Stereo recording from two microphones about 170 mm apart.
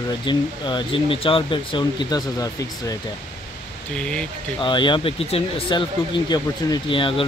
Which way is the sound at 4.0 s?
5° left (ahead or behind).